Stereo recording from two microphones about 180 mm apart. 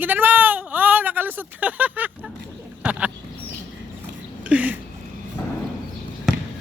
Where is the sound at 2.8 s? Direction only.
5° right (ahead or behind).